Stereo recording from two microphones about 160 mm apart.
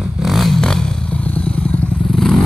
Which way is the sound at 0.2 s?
Centre (ahead or behind).